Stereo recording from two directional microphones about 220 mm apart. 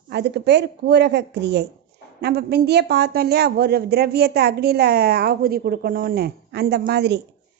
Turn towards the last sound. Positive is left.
turn(degrees=-50)  # may be behind; listen again after turning